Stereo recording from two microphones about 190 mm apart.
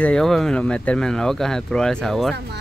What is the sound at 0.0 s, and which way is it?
Speech, 5° left (ahead or behind).